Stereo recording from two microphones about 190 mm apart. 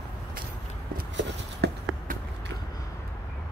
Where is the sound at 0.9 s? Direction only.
55° right (ahead or behind).